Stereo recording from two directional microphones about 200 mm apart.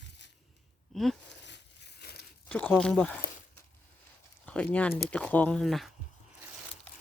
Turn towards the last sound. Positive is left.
turn(degrees=0)  # may be behind; listen again after turning